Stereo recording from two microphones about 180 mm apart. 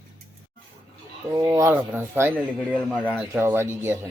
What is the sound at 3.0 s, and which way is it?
Speech, 10° right (ahead or behind).